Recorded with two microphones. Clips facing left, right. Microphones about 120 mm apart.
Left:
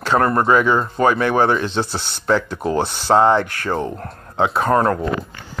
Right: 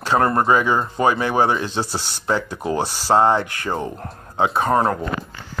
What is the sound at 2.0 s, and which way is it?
Speech, 55° left (ahead or behind).